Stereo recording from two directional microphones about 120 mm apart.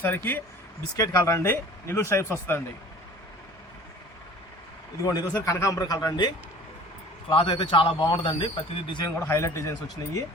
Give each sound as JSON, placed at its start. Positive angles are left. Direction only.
{"t": 0.0, "sound": "speech", "side_deg": 15}
{"t": 0.9, "sound": "speech", "side_deg": 25}
{"t": 5.0, "sound": "a man's voice", "side_deg": 25}
{"t": 7.3, "sound": "speech", "side_deg": 45}
{"t": 9.0, "sound": "speech", "side_deg": 20}